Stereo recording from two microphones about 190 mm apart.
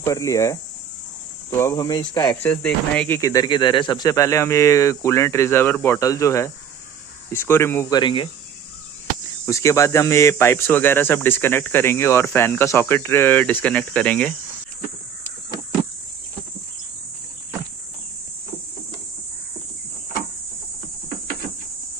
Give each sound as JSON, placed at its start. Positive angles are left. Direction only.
{"t": 0.0, "sound": "speech", "side_deg": 15}
{"t": 2.4, "sound": "speech", "side_deg": 10}
{"t": 9.5, "sound": "speech", "side_deg": 15}